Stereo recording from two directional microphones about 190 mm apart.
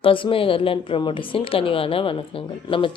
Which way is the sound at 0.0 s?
30° left (ahead or behind).